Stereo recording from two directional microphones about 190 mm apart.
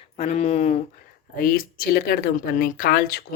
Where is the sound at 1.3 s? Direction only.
50° left (ahead or behind).